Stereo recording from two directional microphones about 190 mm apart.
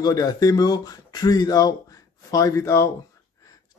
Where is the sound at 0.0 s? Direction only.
20° left (ahead or behind).